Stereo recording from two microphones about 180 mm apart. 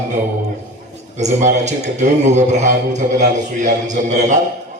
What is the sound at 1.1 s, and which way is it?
A man's voice, 40° right (ahead or behind).